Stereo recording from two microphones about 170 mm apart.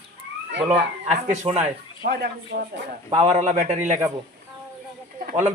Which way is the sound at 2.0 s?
70° right (ahead or behind).